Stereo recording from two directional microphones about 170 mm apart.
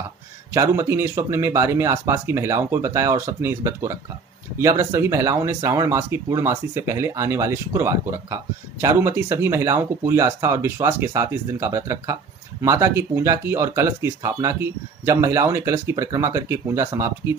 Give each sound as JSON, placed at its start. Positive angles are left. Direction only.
{"t": 0.5, "sound": "speech", "side_deg": -15}